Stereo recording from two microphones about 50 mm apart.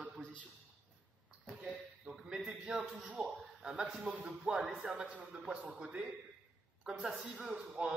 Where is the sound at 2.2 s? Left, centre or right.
Centre.